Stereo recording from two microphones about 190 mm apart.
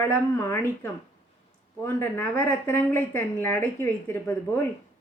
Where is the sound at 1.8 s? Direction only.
10° left (ahead or behind).